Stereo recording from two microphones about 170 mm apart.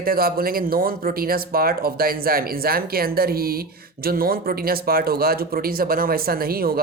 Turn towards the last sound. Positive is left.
turn(degrees=-60)  # may be behind; listen again after turning